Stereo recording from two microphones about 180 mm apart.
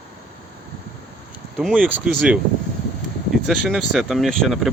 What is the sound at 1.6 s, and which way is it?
Speech, centre (ahead or behind).